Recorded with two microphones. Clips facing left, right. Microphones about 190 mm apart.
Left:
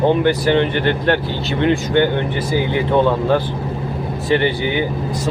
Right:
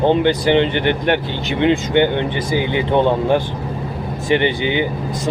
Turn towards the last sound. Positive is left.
turn(degrees=-20)  # may be behind; listen again after turning